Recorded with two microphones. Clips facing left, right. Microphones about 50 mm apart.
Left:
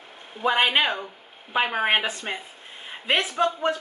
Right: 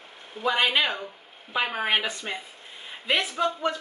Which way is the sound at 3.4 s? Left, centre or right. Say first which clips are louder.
Left 4 dB; left.